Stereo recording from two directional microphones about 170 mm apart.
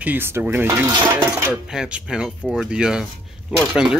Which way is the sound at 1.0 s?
25° right (ahead or behind).